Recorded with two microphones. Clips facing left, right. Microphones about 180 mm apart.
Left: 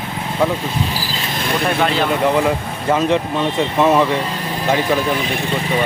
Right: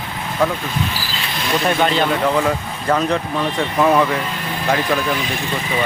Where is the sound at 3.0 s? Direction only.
20° left (ahead or behind).